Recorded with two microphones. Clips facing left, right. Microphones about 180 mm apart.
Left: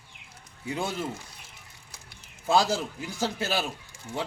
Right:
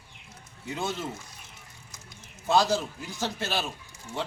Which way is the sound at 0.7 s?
10° left (ahead or behind).